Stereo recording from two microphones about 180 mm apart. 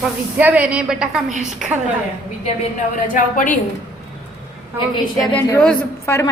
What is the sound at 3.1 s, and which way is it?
Speech, 50° left (ahead or behind).